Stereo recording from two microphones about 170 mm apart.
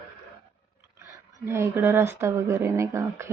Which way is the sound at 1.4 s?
15° right (ahead or behind).